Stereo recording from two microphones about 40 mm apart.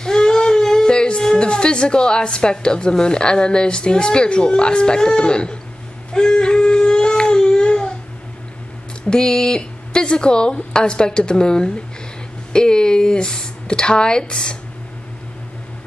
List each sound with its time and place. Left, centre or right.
0.0 s speech: centre
6.1 s crying: left
9.1 s a woman's voice: centre